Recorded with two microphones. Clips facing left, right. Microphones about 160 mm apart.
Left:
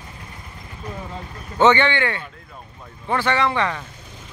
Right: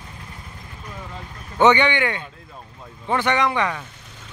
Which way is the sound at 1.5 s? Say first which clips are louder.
Even; 15° right (ahead or behind).